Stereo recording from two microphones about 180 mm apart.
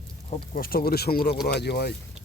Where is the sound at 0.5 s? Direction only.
55° left (ahead or behind).